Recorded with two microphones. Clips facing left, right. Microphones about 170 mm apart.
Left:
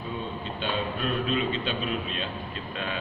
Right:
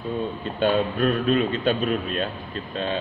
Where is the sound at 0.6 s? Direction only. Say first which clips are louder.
Right 10 dB; 45° right (ahead or behind).